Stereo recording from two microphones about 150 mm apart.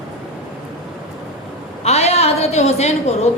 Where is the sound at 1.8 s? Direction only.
45° left (ahead or behind).